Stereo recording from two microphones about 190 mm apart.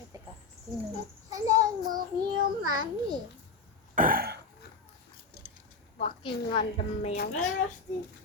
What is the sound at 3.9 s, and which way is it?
Throat clearing, 50° right (ahead or behind).